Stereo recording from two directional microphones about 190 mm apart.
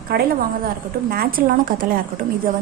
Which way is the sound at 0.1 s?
55° right (ahead or behind).